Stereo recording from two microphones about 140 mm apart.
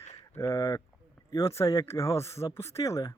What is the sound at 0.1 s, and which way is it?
Speech, 20° left (ahead or behind).